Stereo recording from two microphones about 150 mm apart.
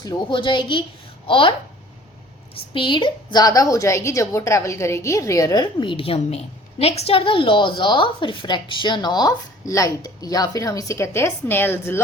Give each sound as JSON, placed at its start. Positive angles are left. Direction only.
{"t": 0.0, "sound": "a woman's voice", "side_deg": 30}
{"t": 2.7, "sound": "a woman's voice", "side_deg": 35}